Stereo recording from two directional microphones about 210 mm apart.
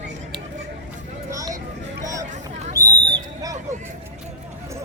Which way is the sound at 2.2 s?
35° right (ahead or behind).